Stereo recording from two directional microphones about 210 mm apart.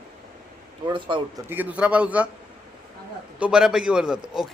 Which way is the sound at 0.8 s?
25° right (ahead or behind).